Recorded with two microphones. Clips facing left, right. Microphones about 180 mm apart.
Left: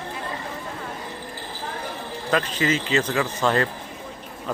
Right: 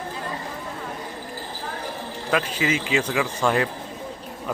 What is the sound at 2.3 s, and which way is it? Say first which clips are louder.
Speech: left 1 dB; 10° right (ahead or behind).